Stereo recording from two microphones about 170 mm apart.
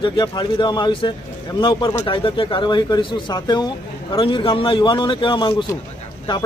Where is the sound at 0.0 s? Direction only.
25° left (ahead or behind).